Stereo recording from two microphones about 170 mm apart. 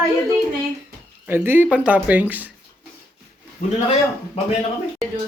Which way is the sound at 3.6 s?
55° left (ahead or behind).